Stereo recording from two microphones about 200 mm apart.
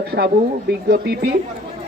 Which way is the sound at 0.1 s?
55° right (ahead or behind).